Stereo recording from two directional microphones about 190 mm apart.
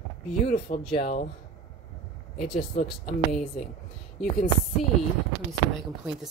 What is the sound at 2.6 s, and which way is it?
Speech, 40° left (ahead or behind).